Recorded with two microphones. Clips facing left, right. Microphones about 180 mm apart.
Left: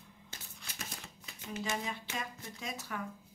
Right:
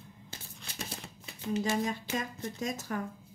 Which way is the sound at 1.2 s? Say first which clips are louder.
Right 8 dB; 35° right (ahead or behind).